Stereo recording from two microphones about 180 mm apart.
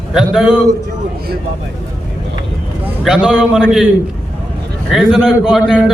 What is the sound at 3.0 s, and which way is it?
Speech, centre (ahead or behind).